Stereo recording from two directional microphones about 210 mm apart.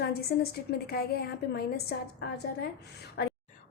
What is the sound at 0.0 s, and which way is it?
A woman's voice, 50° left (ahead or behind).